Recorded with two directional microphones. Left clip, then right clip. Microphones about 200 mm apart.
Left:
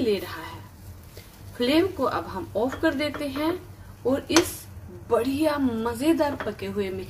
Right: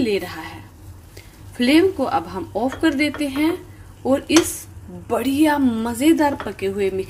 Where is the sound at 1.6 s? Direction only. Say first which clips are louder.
Right 6 dB; 30° right (ahead or behind).